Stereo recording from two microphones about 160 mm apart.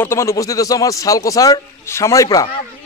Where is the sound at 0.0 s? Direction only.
15° left (ahead or behind).